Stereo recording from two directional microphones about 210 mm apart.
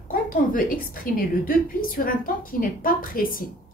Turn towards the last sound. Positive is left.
turn(degrees=40)  # may be behind; listen again after turning